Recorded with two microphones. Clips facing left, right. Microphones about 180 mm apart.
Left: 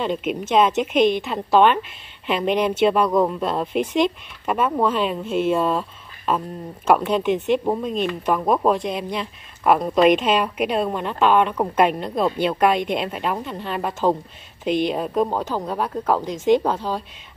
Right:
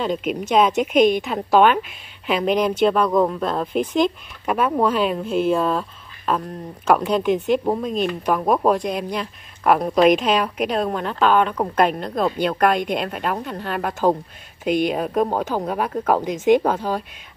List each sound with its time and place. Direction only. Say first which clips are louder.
0.0 s speech: right 1 dB; centre (ahead or behind)
0.9 s a woman's voice: right 2 dB; 45° right (ahead or behind)
1.2 s speech: right 1 dB; 5° right (ahead or behind)